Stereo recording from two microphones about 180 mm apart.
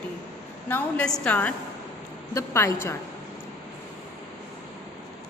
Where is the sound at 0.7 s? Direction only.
10° left (ahead or behind).